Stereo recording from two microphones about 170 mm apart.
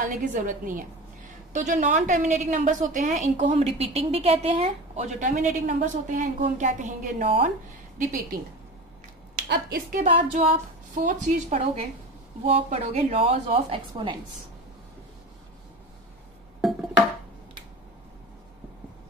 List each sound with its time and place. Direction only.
0.0 s a woman's voice: 50° right (ahead or behind)
9.5 s a woman's voice: 65° right (ahead or behind)
10.0 s a woman's voice: 35° right (ahead or behind)
11.0 s a woman's voice: 45° right (ahead or behind); by 14.1 s 30° right (ahead or behind)